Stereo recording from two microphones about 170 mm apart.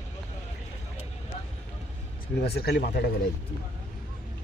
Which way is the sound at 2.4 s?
70° left (ahead or behind).